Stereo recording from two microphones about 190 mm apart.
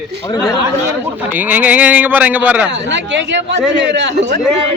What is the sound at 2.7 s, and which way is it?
A woman's voice, 70° right (ahead or behind).